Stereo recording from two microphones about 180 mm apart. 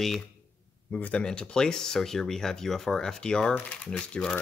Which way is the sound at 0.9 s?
5° left (ahead or behind).